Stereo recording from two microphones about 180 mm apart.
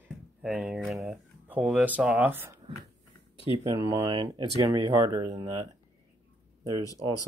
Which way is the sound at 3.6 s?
20° right (ahead or behind).